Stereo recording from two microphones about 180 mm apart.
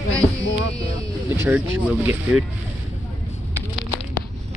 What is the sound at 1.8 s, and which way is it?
Speech, 10° right (ahead or behind).